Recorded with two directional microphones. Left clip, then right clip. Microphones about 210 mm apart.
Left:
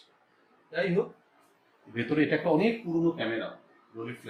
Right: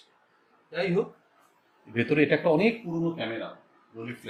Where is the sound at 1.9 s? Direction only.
35° right (ahead or behind).